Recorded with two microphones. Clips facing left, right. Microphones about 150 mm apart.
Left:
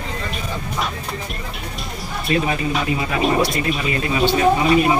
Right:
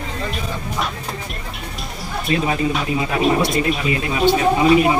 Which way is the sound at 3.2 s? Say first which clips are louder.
Right 1 dB; centre (ahead or behind).